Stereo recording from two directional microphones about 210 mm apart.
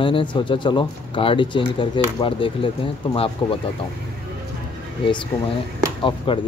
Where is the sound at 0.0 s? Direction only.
25° left (ahead or behind).